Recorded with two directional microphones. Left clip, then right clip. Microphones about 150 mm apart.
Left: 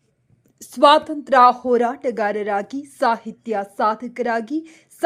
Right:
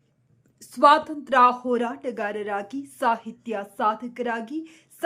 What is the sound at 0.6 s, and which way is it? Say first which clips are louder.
Speech: left 4 dB; 25° left (ahead or behind).